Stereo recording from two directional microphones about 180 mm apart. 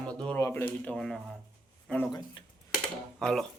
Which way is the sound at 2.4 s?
25° left (ahead or behind).